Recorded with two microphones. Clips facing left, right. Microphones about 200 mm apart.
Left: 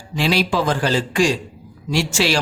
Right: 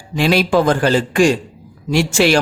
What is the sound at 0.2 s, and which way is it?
Speech, 55° right (ahead or behind).